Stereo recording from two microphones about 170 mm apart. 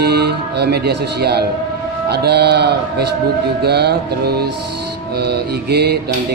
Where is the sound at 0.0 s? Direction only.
70° right (ahead or behind).